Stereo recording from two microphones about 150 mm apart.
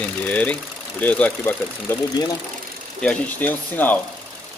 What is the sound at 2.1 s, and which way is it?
Speech, 25° left (ahead or behind).